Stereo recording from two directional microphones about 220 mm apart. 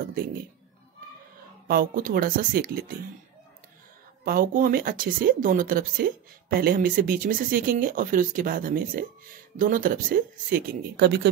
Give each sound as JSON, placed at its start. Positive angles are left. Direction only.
{"t": 1.7, "sound": "speech", "side_deg": -40}
{"t": 4.2, "sound": "speech", "side_deg": -40}